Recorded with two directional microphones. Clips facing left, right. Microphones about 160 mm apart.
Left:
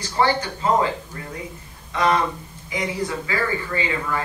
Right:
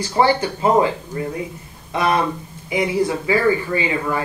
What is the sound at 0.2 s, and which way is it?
Speech, 20° right (ahead or behind).